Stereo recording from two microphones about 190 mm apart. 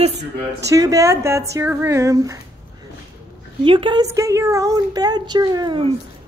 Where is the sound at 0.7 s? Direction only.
20° right (ahead or behind).